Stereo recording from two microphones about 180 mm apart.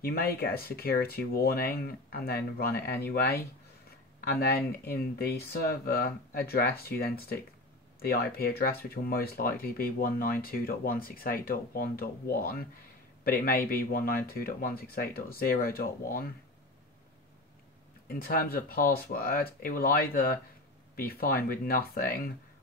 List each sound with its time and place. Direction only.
0.0 s speech: 60° left (ahead or behind)
18.0 s speech: 55° left (ahead or behind)